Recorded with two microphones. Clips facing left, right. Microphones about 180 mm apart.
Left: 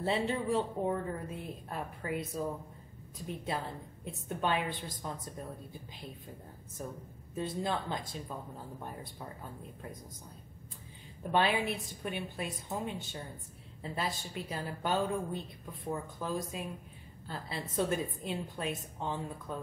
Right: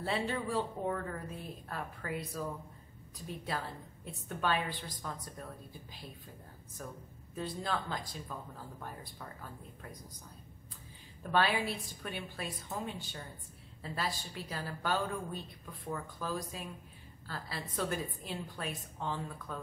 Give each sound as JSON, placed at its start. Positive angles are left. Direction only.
{"t": 0.0, "sound": "a woman's voice", "side_deg": 20}
{"t": 6.8, "sound": "a woman's voice", "side_deg": 25}
{"t": 11.3, "sound": "a woman's voice", "side_deg": 20}